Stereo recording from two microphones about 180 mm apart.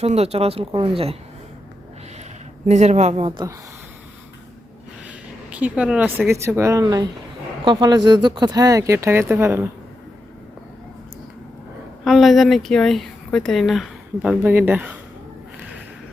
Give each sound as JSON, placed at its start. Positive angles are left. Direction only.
{"t": 0.0, "sound": "speech", "side_deg": -35}
{"t": 2.6, "sound": "speech", "side_deg": -40}
{"t": 5.0, "sound": "speech", "side_deg": -10}
{"t": 12.0, "sound": "speech", "side_deg": 0}
{"t": 14.4, "sound": "speech", "side_deg": -10}